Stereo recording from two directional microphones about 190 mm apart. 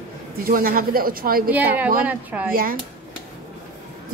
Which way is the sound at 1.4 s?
10° right (ahead or behind).